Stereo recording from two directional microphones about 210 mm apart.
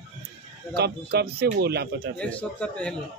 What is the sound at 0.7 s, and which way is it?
A man's voice, 50° right (ahead or behind).